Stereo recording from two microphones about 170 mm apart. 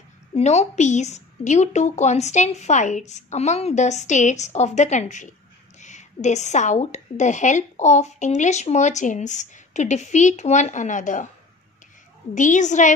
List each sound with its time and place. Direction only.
0.3 s a woman's voice: 40° left (ahead or behind)
12.4 s a woman's voice: 45° left (ahead or behind)